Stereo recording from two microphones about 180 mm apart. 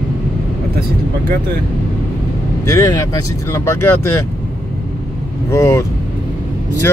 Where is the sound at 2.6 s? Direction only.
15° left (ahead or behind).